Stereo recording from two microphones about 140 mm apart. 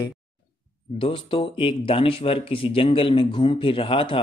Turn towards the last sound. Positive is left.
turn(degrees=40)  # may be behind; listen again after turning